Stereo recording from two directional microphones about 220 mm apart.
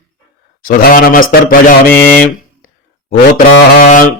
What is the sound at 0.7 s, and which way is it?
Speech, 40° left (ahead or behind).